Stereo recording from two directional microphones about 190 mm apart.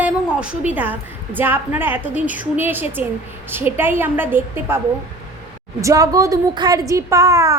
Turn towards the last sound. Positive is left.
turn(degrees=-15)  # may be behind; listen again after turning